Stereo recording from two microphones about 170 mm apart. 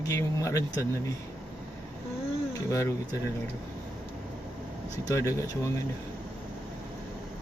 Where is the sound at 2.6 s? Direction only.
20° left (ahead or behind).